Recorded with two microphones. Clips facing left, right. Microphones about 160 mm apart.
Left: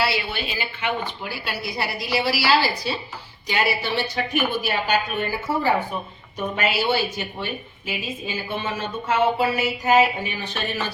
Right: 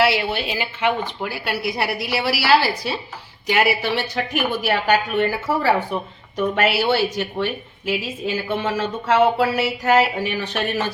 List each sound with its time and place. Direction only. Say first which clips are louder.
0.0 s a woman's voice: right 6 dB; 80° right